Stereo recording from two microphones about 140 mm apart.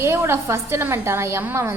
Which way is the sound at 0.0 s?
20° right (ahead or behind).